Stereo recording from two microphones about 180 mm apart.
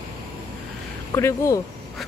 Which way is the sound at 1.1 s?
15° left (ahead or behind).